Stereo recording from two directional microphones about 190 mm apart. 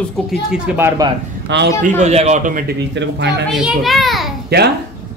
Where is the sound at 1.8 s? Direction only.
35° right (ahead or behind).